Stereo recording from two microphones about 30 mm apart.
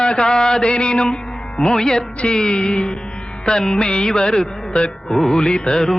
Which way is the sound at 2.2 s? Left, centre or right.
Left.